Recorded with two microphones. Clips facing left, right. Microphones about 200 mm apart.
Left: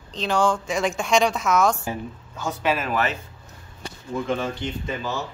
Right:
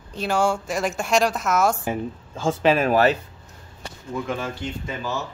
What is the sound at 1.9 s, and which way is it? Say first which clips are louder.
A woman's voice: right 4 dB; 30° right (ahead or behind).